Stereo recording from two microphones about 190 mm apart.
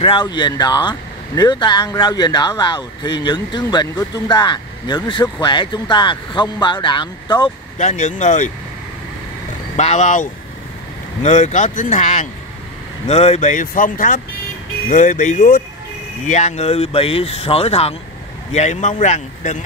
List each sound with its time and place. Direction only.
0.0 s speech: 25° left (ahead or behind)
7.7 s speech: 40° left (ahead or behind)
9.8 s speech: 35° left (ahead or behind)